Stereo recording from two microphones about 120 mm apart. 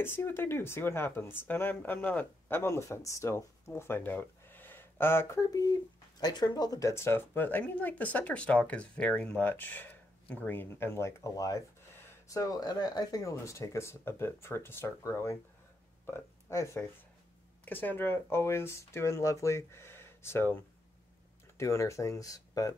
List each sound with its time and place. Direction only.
0.0 s speech: 20° left (ahead or behind)